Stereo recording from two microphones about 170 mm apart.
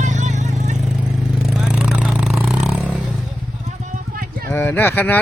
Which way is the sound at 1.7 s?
5° right (ahead or behind).